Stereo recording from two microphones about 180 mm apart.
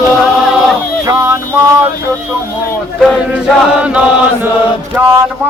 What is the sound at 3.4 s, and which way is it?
Chant, 5° right (ahead or behind).